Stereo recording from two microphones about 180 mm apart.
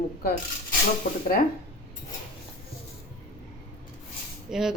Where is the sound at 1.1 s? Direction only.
45° left (ahead or behind).